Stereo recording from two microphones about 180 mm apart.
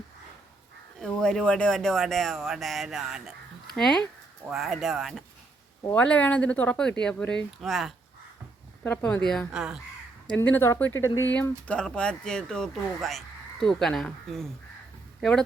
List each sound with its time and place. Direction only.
0.9 s speech: 5° left (ahead or behind)
5.8 s speech: 10° left (ahead or behind)
10.2 s speech: 10° left (ahead or behind)